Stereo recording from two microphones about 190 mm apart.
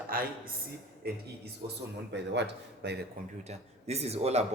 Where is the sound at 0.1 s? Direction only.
50° right (ahead or behind).